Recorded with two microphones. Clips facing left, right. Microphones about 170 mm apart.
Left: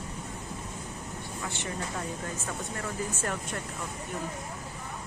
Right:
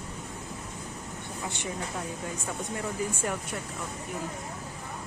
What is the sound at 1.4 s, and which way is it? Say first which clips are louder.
Speech: right 1 dB; 15° right (ahead or behind).